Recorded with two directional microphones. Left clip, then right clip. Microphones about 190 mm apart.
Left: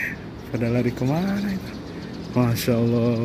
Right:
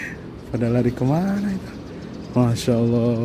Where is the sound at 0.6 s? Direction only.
30° right (ahead or behind).